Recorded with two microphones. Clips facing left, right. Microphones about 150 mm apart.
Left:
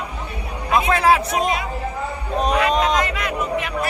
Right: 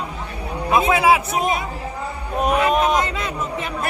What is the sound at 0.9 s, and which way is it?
Speech, 5° right (ahead or behind).